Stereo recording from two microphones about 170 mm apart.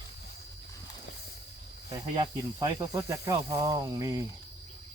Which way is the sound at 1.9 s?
25° right (ahead or behind).